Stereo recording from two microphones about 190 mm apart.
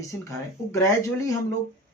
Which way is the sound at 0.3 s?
15° left (ahead or behind).